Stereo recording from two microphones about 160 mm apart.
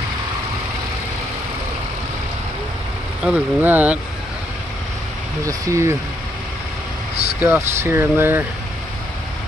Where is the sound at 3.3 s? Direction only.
10° right (ahead or behind).